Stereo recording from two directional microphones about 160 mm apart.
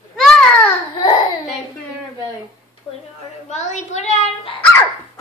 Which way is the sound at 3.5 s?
45° left (ahead or behind).